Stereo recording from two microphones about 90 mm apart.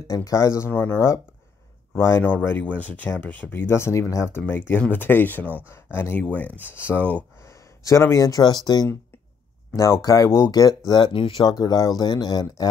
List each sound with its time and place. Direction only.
0.1 s speech: 40° left (ahead or behind)
0.7 s speech: 25° left (ahead or behind); by 8.8 s 50° left (ahead or behind)
9.8 s speech: 35° left (ahead or behind)
10.9 s speech: 65° left (ahead or behind)
11.6 s speech: 45° left (ahead or behind)